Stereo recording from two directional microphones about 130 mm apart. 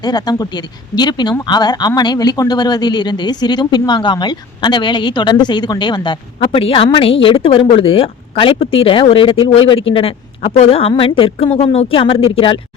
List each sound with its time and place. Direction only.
0.0 s a woman's voice: 30° left (ahead or behind)